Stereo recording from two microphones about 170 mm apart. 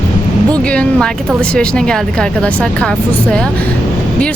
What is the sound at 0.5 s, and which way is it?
Speech, 5° left (ahead or behind).